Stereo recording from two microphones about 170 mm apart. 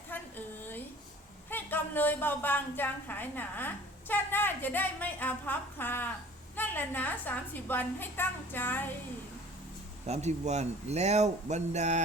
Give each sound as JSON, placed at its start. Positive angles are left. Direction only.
{"t": 0.1, "sound": "a sound", "side_deg": 10}
{"t": 1.5, "sound": "a woman's voice", "side_deg": 10}
{"t": 10.1, "sound": "speech", "side_deg": -40}